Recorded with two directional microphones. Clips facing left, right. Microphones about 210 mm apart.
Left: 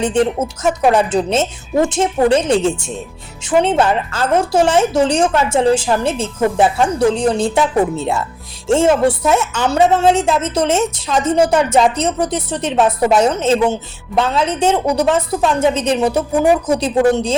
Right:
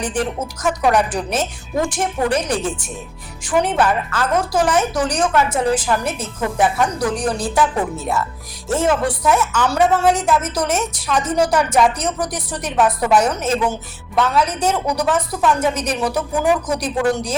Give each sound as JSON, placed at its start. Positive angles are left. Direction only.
{"t": 0.0, "sound": "a woman's voice", "side_deg": 25}